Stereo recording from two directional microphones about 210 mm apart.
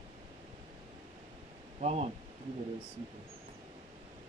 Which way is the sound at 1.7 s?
30° right (ahead or behind).